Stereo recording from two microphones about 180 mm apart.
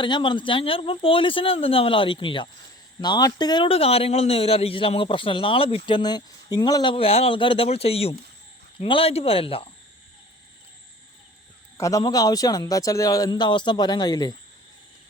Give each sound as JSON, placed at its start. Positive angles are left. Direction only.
{"t": 0.0, "sound": "a man's voice", "side_deg": 25}
{"t": 11.8, "sound": "a man's voice", "side_deg": 20}